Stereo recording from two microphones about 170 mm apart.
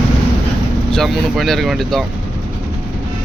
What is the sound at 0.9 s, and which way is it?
Speech, centre (ahead or behind).